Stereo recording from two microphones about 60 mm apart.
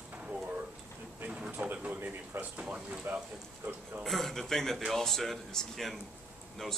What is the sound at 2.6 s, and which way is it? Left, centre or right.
Speech, right.